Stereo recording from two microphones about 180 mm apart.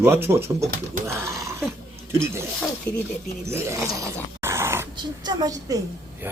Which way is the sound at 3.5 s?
15° right (ahead or behind).